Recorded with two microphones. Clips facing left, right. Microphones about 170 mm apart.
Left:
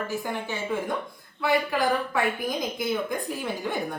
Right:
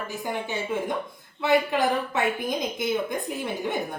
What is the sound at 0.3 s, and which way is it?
A woman's voice, 20° right (ahead or behind).